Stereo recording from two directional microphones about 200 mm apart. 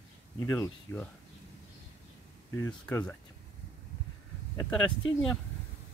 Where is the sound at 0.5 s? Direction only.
15° left (ahead or behind).